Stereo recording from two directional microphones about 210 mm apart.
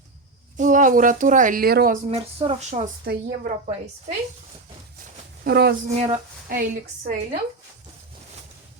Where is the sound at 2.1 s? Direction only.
30° right (ahead or behind).